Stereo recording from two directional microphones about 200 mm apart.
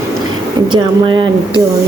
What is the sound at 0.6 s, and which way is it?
Speech, 25° right (ahead or behind).